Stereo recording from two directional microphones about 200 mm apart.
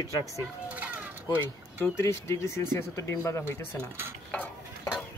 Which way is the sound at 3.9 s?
10° right (ahead or behind).